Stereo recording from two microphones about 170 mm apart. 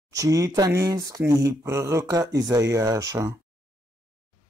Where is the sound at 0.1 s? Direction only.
20° right (ahead or behind).